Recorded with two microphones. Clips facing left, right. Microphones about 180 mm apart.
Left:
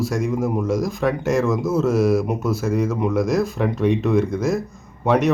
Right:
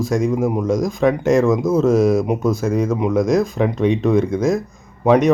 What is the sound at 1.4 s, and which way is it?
Speech, 15° right (ahead or behind).